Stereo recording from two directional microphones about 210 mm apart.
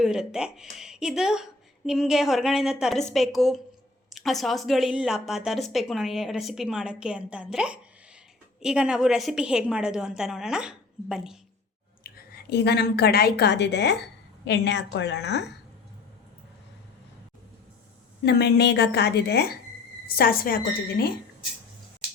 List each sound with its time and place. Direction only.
0.0 s a woman's voice: 5° right (ahead or behind)
12.0 s a woman's voice: 50° left (ahead or behind)
18.3 s a woman's voice: 50° left (ahead or behind)